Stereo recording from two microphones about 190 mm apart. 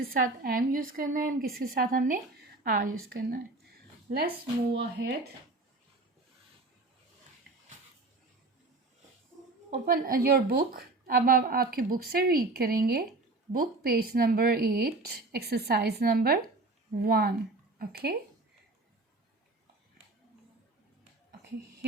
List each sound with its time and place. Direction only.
0.0 s a woman's voice: 50° right (ahead or behind)
4.7 s speech: 60° right (ahead or behind)
9.6 s a woman's voice: 50° right (ahead or behind)